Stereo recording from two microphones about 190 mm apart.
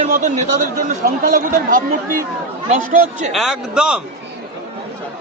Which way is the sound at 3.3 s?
Centre (ahead or behind).